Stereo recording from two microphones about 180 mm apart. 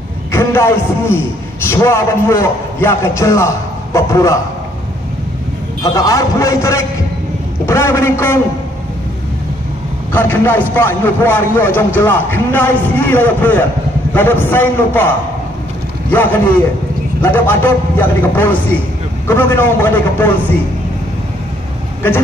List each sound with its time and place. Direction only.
0.3 s a man's voice: 15° left (ahead or behind)
5.8 s a man's voice: 20° left (ahead or behind)
10.1 s a man's voice: 10° left (ahead or behind)
17.2 s a man's voice: 10° left (ahead or behind)